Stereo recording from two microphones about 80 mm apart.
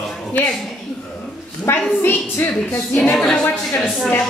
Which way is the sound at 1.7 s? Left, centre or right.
Left.